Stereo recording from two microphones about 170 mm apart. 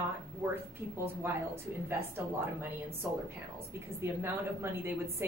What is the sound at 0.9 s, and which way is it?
A woman's voice, 15° right (ahead or behind).